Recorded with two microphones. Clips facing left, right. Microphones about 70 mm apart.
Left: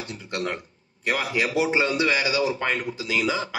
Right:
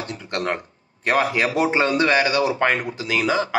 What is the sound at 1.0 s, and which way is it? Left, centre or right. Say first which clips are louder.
A man's voice: right 5 dB; right.